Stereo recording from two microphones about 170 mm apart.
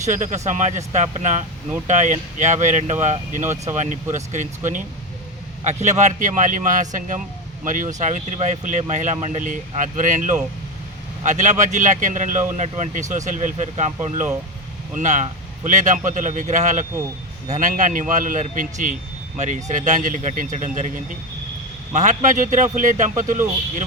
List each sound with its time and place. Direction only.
0.0 s speech: 45° right (ahead or behind)